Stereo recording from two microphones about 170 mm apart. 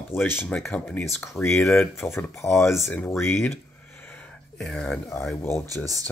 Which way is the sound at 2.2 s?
15° left (ahead or behind).